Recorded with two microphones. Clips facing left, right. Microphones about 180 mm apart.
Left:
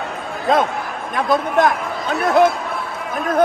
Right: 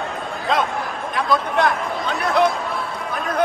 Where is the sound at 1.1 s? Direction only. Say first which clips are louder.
Left 3 dB; 50° left (ahead or behind).